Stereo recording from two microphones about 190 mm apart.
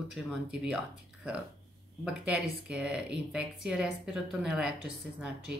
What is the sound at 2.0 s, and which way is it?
Speech, 5° right (ahead or behind).